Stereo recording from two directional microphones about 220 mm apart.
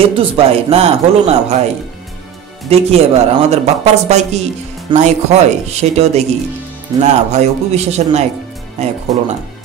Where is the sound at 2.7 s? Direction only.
30° right (ahead or behind).